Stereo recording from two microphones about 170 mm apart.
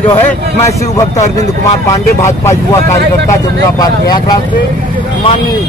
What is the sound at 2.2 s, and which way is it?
Speech, 15° left (ahead or behind).